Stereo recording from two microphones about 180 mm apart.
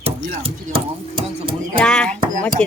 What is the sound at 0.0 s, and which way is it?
Speech, 30° right (ahead or behind).